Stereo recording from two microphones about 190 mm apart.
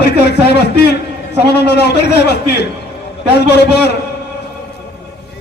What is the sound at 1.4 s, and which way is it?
A man's voice, 60° left (ahead or behind).